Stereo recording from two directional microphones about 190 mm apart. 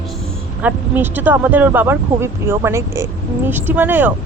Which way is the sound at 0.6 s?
10° right (ahead or behind).